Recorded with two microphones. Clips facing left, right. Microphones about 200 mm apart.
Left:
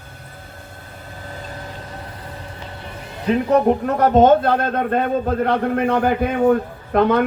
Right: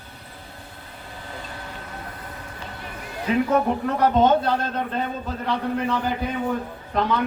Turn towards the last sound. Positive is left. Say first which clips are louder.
# left 7 dB
turn(degrees=55)  # may be behind; listen again after turning